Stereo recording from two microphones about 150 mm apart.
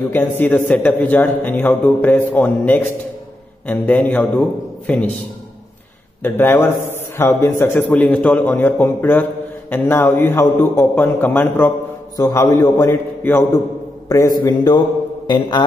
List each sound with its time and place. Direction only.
0.1 s a man's voice: 15° left (ahead or behind)
6.2 s a man's voice: 15° left (ahead or behind)